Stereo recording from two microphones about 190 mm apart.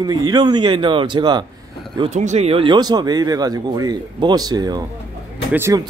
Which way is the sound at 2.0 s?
40° right (ahead or behind).